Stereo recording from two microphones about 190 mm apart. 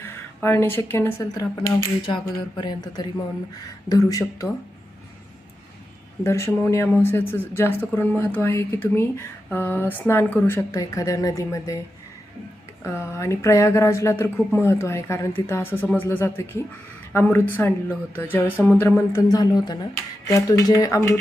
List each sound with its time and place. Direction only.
0.0 s speech: 10° left (ahead or behind)
6.2 s speech: 15° left (ahead or behind)
12.8 s speech: 15° left (ahead or behind)